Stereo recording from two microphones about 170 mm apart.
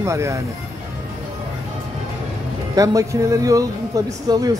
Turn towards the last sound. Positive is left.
turn(degrees=-20)  # may be behind; listen again after turning